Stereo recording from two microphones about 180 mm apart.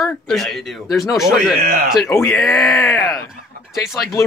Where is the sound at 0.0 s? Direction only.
Centre (ahead or behind).